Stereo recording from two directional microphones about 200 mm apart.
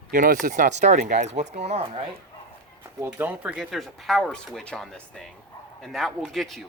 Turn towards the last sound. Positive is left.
turn(degrees=0)  # may be behind; listen again after turning